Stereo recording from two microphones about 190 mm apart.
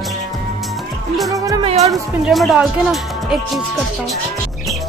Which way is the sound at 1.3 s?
15° right (ahead or behind).